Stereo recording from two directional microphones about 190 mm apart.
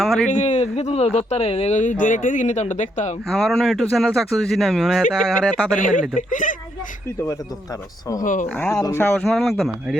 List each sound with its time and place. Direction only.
0.0 s speech: centre (ahead or behind)
0.3 s speech: 40° left (ahead or behind)
3.2 s speech: centre (ahead or behind)
5.8 s speech: 45° left (ahead or behind)
8.2 s speech: 45° left (ahead or behind)
8.5 s speech: 15° left (ahead or behind)